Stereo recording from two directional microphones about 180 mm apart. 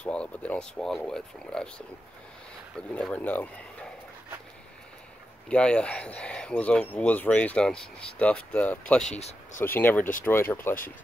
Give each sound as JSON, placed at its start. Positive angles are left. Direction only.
{"t": 0.0, "sound": "speech", "side_deg": 5}
{"t": 2.9, "sound": "speech", "side_deg": 10}
{"t": 5.5, "sound": "speech", "side_deg": 5}
{"t": 9.2, "sound": "speech", "side_deg": 45}
{"t": 9.7, "sound": "speech", "side_deg": 10}